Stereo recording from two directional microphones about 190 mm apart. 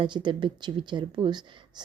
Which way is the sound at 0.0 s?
25° right (ahead or behind).